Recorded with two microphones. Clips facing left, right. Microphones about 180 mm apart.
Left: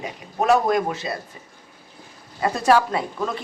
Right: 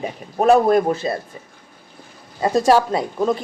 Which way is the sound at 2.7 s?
30° right (ahead or behind).